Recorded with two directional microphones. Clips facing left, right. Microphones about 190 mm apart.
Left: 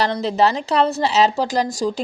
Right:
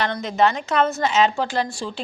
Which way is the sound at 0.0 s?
35° left (ahead or behind).